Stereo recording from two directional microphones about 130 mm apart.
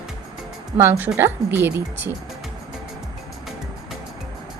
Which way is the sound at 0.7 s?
15° right (ahead or behind).